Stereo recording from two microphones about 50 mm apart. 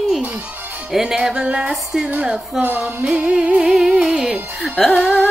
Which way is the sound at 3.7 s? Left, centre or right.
Centre.